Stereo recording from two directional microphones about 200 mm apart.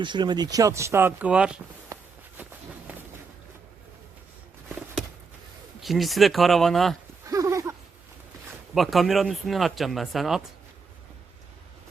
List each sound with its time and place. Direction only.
0.0 s speech: 25° right (ahead or behind); by 1.6 s 5° right (ahead or behind)
1.9 s walk: 20° right (ahead or behind)
5.8 s speech: centre (ahead or behind)
7.3 s a sound: 15° right (ahead or behind)
8.7 s speech: centre (ahead or behind)